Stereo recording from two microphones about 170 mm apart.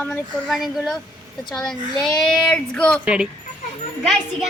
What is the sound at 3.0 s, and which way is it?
Speech, 5° right (ahead or behind).